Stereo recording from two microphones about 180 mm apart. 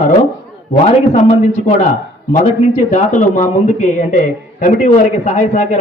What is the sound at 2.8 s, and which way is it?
A man's voice, 45° left (ahead or behind).